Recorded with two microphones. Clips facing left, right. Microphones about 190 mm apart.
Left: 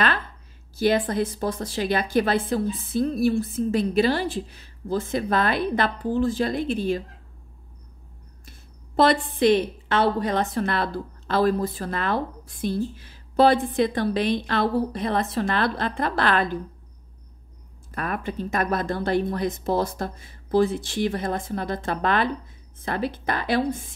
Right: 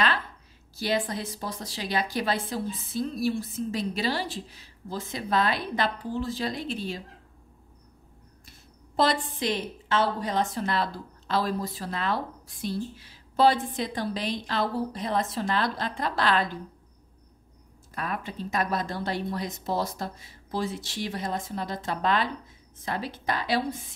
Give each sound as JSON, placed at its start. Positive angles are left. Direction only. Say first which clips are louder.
{"t": 0.7, "sound": "a woman's voice", "louder": "left 7 dB", "side_deg": 55}
{"t": 8.5, "sound": "a woman's voice", "louder": "left 4 dB", "side_deg": 60}
{"t": 17.9, "sound": "a woman's voice", "louder": "left 5 dB", "side_deg": 55}